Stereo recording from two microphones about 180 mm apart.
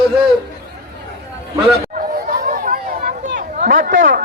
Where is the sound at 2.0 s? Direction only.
55° right (ahead or behind).